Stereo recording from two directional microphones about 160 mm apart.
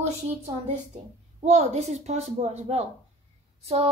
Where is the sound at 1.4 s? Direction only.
45° right (ahead or behind).